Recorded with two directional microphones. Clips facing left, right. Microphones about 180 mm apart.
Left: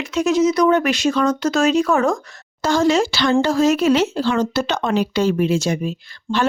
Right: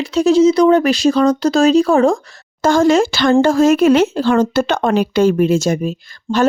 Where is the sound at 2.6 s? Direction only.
50° right (ahead or behind).